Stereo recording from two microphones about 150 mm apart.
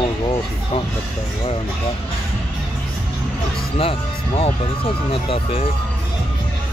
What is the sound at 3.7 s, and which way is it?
Speech, 40° left (ahead or behind).